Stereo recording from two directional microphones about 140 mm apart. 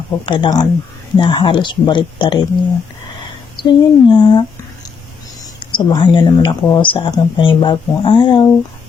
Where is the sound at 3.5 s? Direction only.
35° left (ahead or behind).